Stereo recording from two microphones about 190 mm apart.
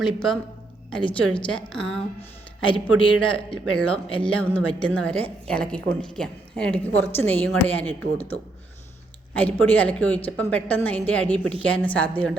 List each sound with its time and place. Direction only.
0.0 s a woman's voice: centre (ahead or behind)
2.6 s a man's voice: 25° left (ahead or behind)
3.2 s a woman's voice: 5° left (ahead or behind)
9.3 s a woman's voice: 10° left (ahead or behind)